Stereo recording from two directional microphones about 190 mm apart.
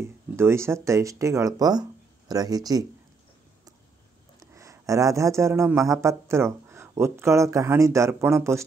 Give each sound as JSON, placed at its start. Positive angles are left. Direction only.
{"t": 0.4, "sound": "speech", "side_deg": -15}
{"t": 4.4, "sound": "a man's voice", "side_deg": -15}